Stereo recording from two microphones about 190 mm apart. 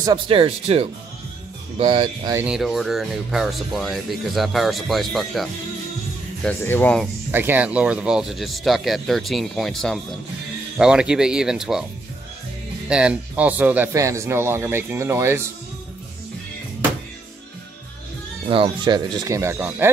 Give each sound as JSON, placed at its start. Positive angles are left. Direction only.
{"t": 0.0, "sound": "speech", "side_deg": -25}
{"t": 2.4, "sound": "speech", "side_deg": 0}
{"t": 7.2, "sound": "speech", "side_deg": -10}
{"t": 12.8, "sound": "a man's voice", "side_deg": -5}
{"t": 18.5, "sound": "a man's voice", "side_deg": -25}